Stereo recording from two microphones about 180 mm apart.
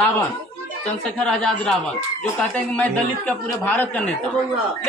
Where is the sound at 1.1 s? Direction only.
5° left (ahead or behind).